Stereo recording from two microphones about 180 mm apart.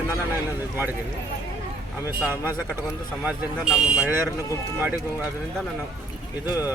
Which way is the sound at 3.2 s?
5° right (ahead or behind).